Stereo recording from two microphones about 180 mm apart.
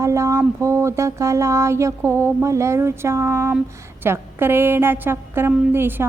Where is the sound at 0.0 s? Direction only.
15° right (ahead or behind).